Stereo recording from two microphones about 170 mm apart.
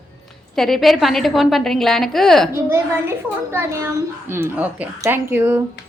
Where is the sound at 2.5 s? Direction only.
15° right (ahead or behind).